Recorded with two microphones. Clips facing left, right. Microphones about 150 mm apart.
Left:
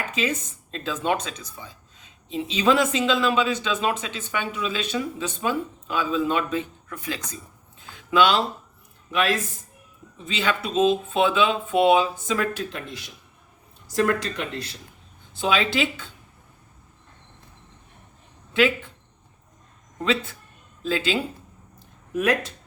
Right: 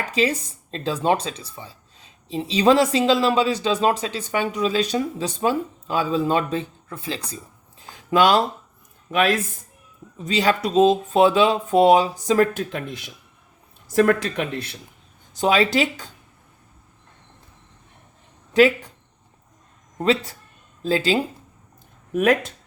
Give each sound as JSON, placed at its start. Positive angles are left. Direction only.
{"t": 0.1, "sound": "speech", "side_deg": -35}
{"t": 7.8, "sound": "a sound", "side_deg": -40}
{"t": 9.1, "sound": "speech", "side_deg": -45}
{"t": 13.9, "sound": "speech", "side_deg": -55}
{"t": 15.4, "sound": "speech", "side_deg": -40}
{"t": 18.5, "sound": "speech", "side_deg": -40}
{"t": 20.0, "sound": "speech", "side_deg": -40}